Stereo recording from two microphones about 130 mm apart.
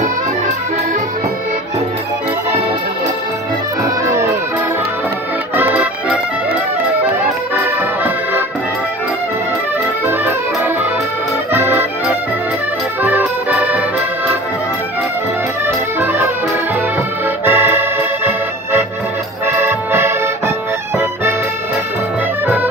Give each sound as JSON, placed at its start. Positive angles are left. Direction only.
{"t": 4.0, "sound": "music", "side_deg": -25}
{"t": 5.6, "sound": "accordion", "side_deg": -15}
{"t": 7.5, "sound": "accordion", "side_deg": -15}
{"t": 10.0, "sound": "music", "side_deg": -15}
{"t": 11.5, "sound": "accordion", "side_deg": -15}
{"t": 13.0, "sound": "music", "side_deg": -15}
{"t": 16.0, "sound": "music", "side_deg": -20}
{"t": 17.5, "sound": "music", "side_deg": -15}